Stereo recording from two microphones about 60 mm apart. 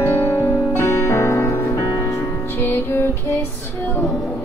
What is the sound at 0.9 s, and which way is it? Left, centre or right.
Music, left.